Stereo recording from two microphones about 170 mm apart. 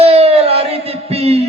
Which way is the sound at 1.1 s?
35° right (ahead or behind).